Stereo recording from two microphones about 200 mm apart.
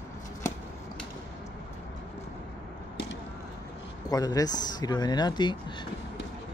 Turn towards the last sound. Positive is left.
turn(degrees=20)  # may be behind; listen again after turning